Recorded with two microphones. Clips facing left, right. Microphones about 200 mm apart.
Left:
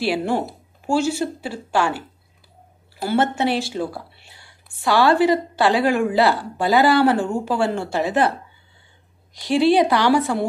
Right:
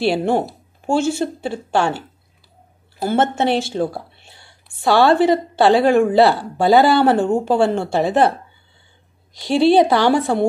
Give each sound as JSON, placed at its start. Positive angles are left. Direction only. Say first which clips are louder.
{"t": 0.0, "sound": "a woman's voice", "louder": "right 4 dB", "side_deg": -25}
{"t": 3.2, "sound": "a woman's voice", "louder": "right 2 dB", "side_deg": -25}
{"t": 3.8, "sound": "a sound", "louder": "right 5 dB", "side_deg": -25}
{"t": 4.8, "sound": "a woman's voice", "louder": "right 3 dB", "side_deg": -25}
{"t": 9.6, "sound": "a woman's voice", "louder": "right 3 dB", "side_deg": -25}